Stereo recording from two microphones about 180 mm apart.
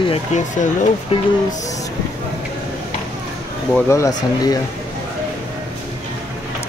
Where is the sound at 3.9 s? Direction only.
20° left (ahead or behind).